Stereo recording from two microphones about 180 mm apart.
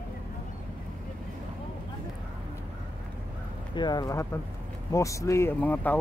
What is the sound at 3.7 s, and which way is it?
Speech, 25° left (ahead or behind).